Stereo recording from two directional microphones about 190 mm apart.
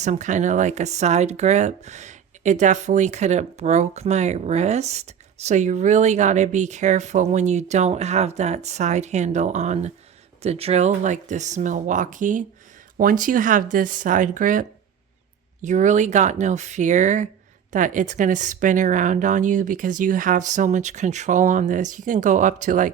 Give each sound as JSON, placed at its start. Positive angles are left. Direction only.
{"t": 0.0, "sound": "speech", "side_deg": -40}